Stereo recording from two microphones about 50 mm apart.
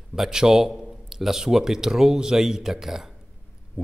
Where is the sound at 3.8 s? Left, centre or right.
Centre.